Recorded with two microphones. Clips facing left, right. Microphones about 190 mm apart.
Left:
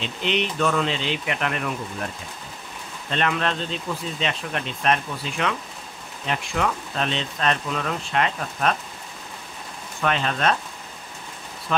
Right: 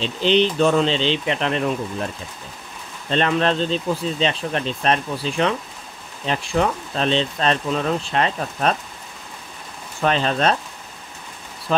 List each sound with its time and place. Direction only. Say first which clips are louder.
0.0 s speech: right 7 dB; 30° right (ahead or behind)
3.1 s speech: right 5 dB; 30° right (ahead or behind)
10.0 s speech: right 4 dB; 35° right (ahead or behind)